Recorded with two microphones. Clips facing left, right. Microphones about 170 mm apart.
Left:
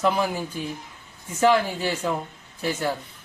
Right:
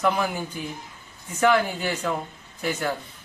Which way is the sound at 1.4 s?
30° left (ahead or behind).